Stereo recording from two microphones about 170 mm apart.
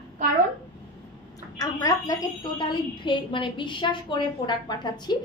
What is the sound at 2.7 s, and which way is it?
A woman's voice, 30° left (ahead or behind).